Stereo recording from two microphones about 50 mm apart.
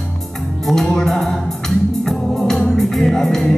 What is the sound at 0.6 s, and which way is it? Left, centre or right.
Music, centre.